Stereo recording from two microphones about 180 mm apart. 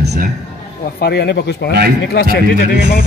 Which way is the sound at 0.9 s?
65° left (ahead or behind).